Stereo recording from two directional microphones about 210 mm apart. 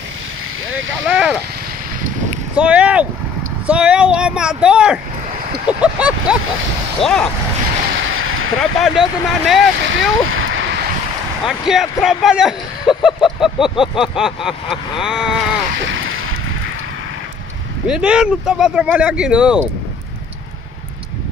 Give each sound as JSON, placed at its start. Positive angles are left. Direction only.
{"t": 1.0, "sound": "speech", "side_deg": -5}
{"t": 2.5, "sound": "speech", "side_deg": -5}
{"t": 5.8, "sound": "a sound", "side_deg": -5}
{"t": 7.0, "sound": "speech", "side_deg": 5}
{"t": 8.0, "sound": "a sound", "side_deg": -70}
{"t": 8.5, "sound": "speech", "side_deg": 0}
{"t": 9.8, "sound": "splash", "side_deg": -70}
{"t": 11.4, "sound": "speech", "side_deg": 0}
{"t": 15.9, "sound": "vehicle", "side_deg": -70}
{"t": 17.8, "sound": "speech", "side_deg": -5}